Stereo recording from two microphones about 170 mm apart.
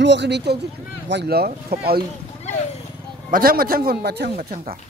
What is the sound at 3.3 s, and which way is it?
A man's voice, 60° right (ahead or behind).